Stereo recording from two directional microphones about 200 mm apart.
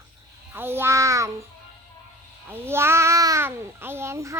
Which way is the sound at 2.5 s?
10° right (ahead or behind).